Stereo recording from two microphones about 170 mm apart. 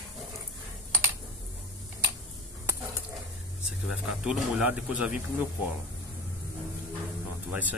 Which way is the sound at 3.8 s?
5° right (ahead or behind).